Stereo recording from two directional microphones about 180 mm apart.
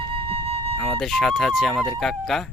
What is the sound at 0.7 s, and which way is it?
Speech, 5° left (ahead or behind).